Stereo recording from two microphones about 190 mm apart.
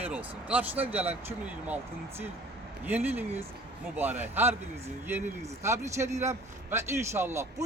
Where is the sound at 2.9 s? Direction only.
10° right (ahead or behind).